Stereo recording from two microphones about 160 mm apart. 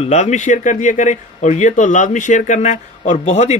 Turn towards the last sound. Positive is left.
turn(degrees=45)  # may be behind; listen again after turning